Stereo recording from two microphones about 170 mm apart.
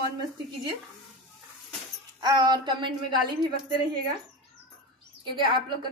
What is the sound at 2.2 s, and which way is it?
A woman's voice, 25° right (ahead or behind).